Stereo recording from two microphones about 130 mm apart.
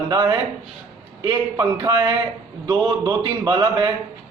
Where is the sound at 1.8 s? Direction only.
35° right (ahead or behind).